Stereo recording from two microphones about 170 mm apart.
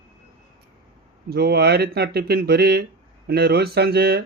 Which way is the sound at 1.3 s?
70° right (ahead or behind).